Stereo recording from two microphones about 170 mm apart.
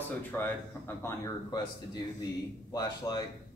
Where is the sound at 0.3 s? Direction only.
10° left (ahead or behind).